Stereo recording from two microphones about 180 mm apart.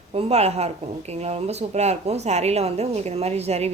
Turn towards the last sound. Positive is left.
turn(degrees=-35)  # may be behind; listen again after turning